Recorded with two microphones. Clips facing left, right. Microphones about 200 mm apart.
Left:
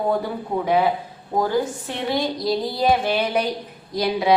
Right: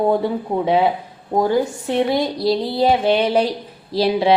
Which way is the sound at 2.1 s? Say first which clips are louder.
Right 4 dB; 25° right (ahead or behind).